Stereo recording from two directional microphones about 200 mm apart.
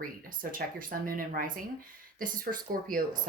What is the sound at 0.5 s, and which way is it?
A woman's voice, 45° right (ahead or behind).